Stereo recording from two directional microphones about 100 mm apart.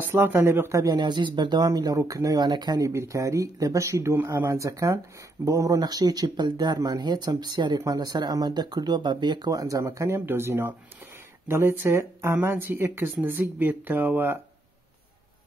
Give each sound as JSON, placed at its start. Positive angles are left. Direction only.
{"t": 0.0, "sound": "speech", "side_deg": -20}
{"t": 0.9, "sound": "speech", "side_deg": -50}
{"t": 2.9, "sound": "speech", "side_deg": -30}